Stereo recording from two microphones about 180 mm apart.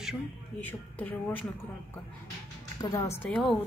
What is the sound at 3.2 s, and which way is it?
Speech, 5° left (ahead or behind).